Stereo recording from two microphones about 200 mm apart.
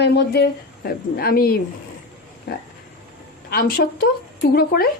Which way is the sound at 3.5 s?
50° left (ahead or behind).